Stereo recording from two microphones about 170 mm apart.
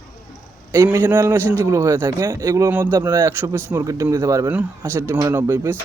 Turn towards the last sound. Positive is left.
turn(degrees=-15)  # may be behind; listen again after turning